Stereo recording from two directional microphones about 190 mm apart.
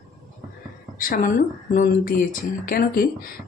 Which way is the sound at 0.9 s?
45° left (ahead or behind).